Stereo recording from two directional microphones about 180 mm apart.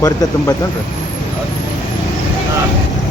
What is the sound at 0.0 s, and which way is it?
Speech, 20° left (ahead or behind).